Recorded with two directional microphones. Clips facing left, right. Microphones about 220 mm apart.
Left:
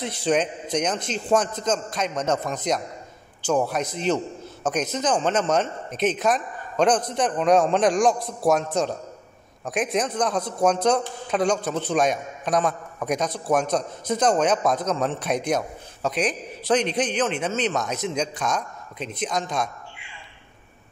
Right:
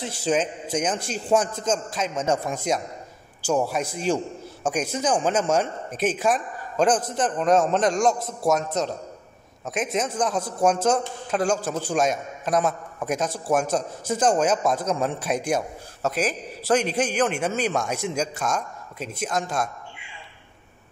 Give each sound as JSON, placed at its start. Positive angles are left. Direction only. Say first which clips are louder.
{"t": 0.0, "sound": "a man's voice", "louder": "left 1 dB", "side_deg": -5}
{"t": 9.9, "sound": "a man's voice", "louder": "even", "side_deg": -5}